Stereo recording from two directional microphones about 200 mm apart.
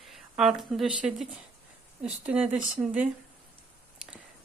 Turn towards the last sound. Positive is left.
turn(degrees=-5)  # may be behind; listen again after turning